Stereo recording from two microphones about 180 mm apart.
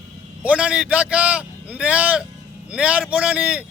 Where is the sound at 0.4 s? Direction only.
5° right (ahead or behind).